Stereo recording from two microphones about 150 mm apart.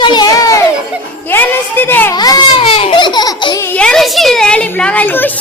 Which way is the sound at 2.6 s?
40° left (ahead or behind).